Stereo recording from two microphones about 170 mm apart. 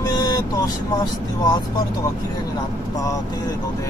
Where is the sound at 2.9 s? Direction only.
20° left (ahead or behind).